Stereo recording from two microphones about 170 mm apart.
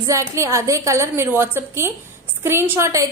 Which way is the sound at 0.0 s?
15° right (ahead or behind).